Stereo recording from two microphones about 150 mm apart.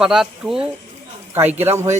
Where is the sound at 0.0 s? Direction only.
5° right (ahead or behind).